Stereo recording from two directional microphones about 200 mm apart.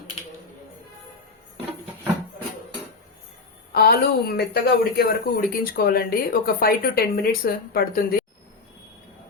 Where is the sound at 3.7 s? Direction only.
50° left (ahead or behind).